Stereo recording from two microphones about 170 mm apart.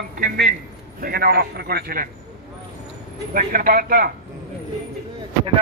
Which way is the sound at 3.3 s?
55° right (ahead or behind).